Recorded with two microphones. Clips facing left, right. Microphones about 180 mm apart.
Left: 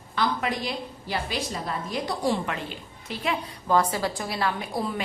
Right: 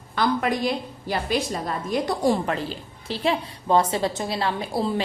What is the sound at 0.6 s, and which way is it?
A woman's voice, 45° right (ahead or behind).